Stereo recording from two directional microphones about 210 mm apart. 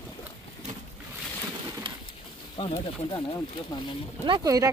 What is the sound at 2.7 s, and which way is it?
Speech, 20° left (ahead or behind).